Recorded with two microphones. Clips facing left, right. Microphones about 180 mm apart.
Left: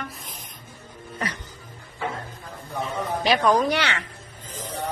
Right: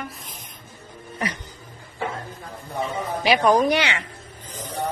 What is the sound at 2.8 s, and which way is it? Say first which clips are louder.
Speech: right 1 dB; 10° right (ahead or behind).